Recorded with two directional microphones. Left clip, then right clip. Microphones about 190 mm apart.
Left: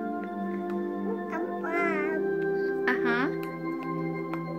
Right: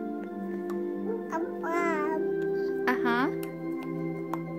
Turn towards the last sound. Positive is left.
turn(degrees=-15)  # may be behind; listen again after turning